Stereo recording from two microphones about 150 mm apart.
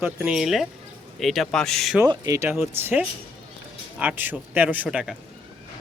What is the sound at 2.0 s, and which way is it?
Speech, 20° right (ahead or behind).